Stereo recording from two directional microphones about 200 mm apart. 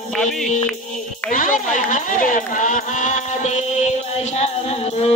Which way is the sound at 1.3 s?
40° left (ahead or behind).